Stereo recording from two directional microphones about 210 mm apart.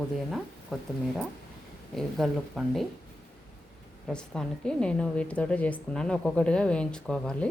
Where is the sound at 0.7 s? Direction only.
Centre (ahead or behind).